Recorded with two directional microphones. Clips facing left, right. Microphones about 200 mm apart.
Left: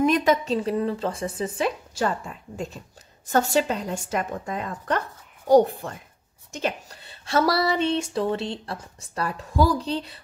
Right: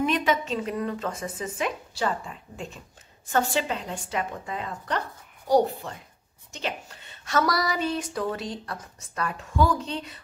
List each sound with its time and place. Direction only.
0.0 s speech: 40° left (ahead or behind)